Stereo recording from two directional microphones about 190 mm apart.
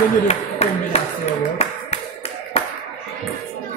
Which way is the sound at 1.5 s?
35° left (ahead or behind).